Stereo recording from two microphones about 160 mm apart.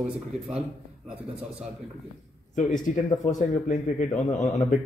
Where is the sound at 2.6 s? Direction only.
50° left (ahead or behind).